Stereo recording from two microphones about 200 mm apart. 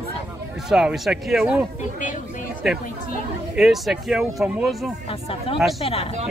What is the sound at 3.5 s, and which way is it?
Speech, centre (ahead or behind).